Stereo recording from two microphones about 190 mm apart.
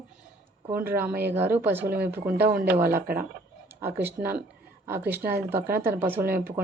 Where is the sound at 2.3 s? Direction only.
55° right (ahead or behind).